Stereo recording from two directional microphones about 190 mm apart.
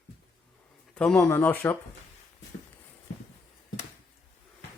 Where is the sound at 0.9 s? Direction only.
5° left (ahead or behind).